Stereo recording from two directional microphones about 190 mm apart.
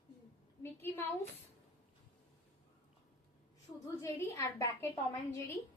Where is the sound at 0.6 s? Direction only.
10° left (ahead or behind).